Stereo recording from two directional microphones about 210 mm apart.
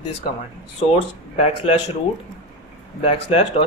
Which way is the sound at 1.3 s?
30° left (ahead or behind).